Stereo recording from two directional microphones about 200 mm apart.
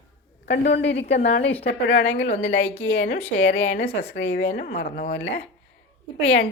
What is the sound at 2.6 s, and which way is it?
Speech, 30° left (ahead or behind).